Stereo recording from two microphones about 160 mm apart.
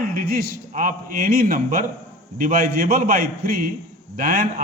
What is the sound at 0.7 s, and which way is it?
A man's voice, 60° right (ahead or behind).